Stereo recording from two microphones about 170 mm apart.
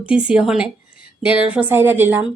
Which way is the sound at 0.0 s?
5° right (ahead or behind).